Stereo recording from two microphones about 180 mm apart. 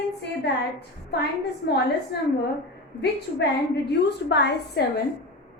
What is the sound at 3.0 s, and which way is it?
A woman's voice, 70° left (ahead or behind).